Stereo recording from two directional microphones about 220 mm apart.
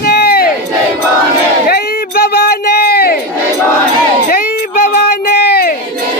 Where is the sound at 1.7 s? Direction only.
45° left (ahead or behind).